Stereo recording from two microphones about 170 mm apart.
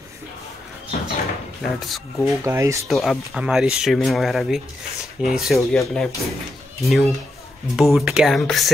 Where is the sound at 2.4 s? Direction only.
15° right (ahead or behind).